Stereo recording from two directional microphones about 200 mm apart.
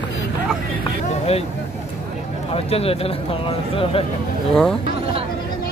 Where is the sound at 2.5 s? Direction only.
30° left (ahead or behind).